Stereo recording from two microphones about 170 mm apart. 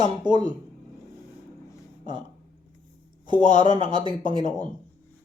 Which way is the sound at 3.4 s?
30° right (ahead or behind).